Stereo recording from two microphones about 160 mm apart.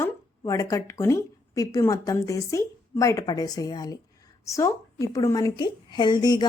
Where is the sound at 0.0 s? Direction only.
20° left (ahead or behind).